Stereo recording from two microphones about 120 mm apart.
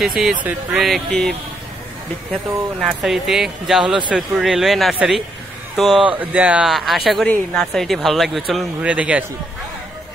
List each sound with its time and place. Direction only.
0.0 s speech: 5° right (ahead or behind)
0.8 s speech: centre (ahead or behind)
2.8 s speech: centre (ahead or behind)
8.8 s a man's voice: 10° right (ahead or behind)